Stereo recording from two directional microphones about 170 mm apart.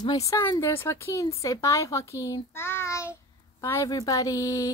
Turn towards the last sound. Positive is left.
turn(degrees=20)  # may be behind; listen again after turning